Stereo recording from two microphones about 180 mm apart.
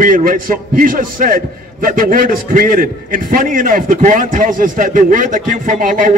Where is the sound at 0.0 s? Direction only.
50° right (ahead or behind).